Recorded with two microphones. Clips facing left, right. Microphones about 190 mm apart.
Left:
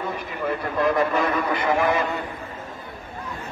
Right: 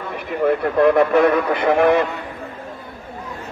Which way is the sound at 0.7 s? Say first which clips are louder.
Right 7 dB; 60° right (ahead or behind).